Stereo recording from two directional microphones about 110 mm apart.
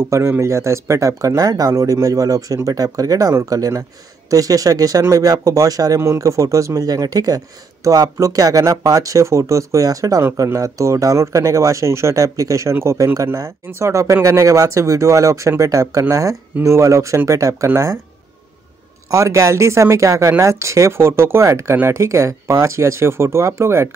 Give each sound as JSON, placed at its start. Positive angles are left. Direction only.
{"t": 0.0, "sound": "speech", "side_deg": -25}
{"t": 19.0, "sound": "speech", "side_deg": -30}